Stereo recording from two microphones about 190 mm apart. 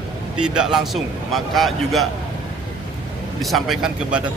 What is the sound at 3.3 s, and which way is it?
Speech, centre (ahead or behind).